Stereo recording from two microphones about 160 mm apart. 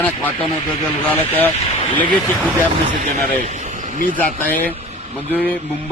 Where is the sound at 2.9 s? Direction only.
50° right (ahead or behind).